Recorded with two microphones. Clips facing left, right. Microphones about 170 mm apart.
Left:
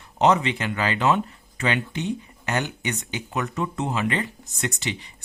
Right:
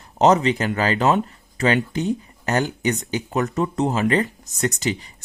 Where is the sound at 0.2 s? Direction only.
40° right (ahead or behind).